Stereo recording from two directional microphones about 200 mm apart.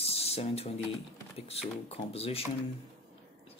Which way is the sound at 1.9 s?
30° left (ahead or behind).